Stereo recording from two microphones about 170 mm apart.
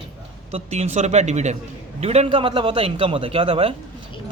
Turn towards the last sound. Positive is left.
turn(degrees=-30)  # may be behind; listen again after turning